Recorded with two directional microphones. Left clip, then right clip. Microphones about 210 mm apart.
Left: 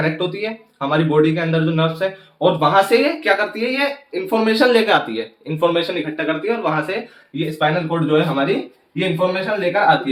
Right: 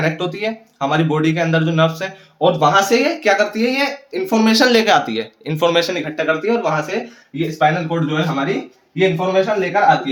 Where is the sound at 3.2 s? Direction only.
50° right (ahead or behind).